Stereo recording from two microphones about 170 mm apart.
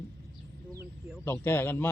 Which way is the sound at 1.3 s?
15° left (ahead or behind).